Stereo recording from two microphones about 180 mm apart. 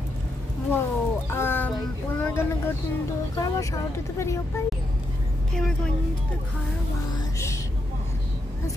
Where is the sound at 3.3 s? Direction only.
20° left (ahead or behind).